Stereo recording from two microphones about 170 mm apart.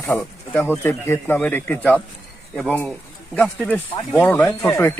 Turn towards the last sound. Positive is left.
turn(degrees=10)  # may be behind; listen again after turning